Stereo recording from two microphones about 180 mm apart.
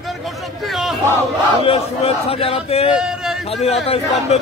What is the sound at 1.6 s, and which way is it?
Speech, 35° left (ahead or behind).